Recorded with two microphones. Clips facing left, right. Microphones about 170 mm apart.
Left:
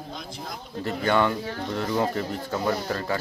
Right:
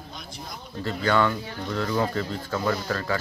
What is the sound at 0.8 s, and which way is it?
Speech, 20° left (ahead or behind).